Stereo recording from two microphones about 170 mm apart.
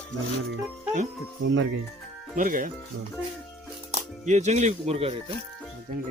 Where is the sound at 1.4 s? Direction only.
90° right.